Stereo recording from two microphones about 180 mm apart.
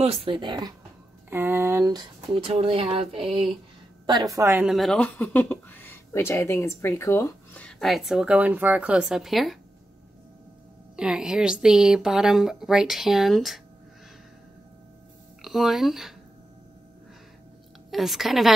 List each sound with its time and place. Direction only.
0.0 s speech: 35° right (ahead or behind)
1.3 s speech: 10° right (ahead or behind)
4.6 s speech: centre (ahead or behind)
11.0 s speech: 5° right (ahead or behind)
15.4 s speech: centre (ahead or behind)
17.9 s speech: centre (ahead or behind)